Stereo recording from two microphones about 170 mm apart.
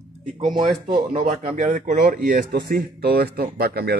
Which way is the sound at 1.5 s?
50° right (ahead or behind).